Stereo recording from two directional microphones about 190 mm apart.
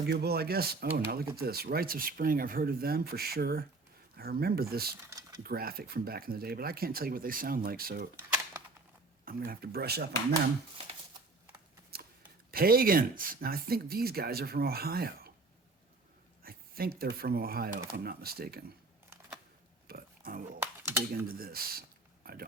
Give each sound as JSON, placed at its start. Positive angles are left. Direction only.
{"t": 0.1, "sound": "speech", "side_deg": -55}
{"t": 5.0, "sound": "a sound", "side_deg": -15}
{"t": 5.4, "sound": "speech", "side_deg": -50}
{"t": 8.1, "sound": "a sound", "side_deg": -10}
{"t": 9.2, "sound": "speech", "side_deg": -50}
{"t": 11.9, "sound": "shuffling cards", "side_deg": -55}
{"t": 12.5, "sound": "speech", "side_deg": -50}
{"t": 16.4, "sound": "speech", "side_deg": -50}
{"t": 19.9, "sound": "pig", "side_deg": -50}
{"t": 21.2, "sound": "speech", "side_deg": -50}